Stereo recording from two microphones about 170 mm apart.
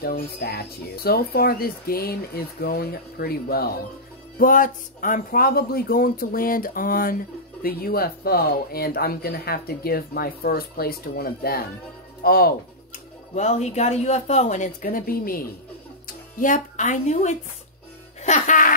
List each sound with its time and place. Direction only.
0.0 s speech: 65° left (ahead or behind)
4.4 s speech: 55° left (ahead or behind)
12.2 s music: 60° left (ahead or behind)
13.3 s speech: 40° left (ahead or behind)
18.2 s music: 45° left (ahead or behind)